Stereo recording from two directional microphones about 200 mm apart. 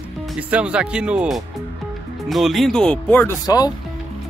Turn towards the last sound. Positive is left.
turn(degrees=20)  # may be behind; listen again after turning